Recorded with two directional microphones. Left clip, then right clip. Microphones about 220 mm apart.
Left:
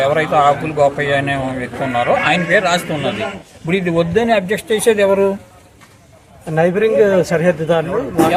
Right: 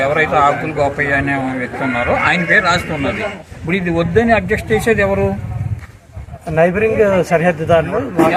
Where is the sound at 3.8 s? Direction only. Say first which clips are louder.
Right 1 dB; 50° left (ahead or behind).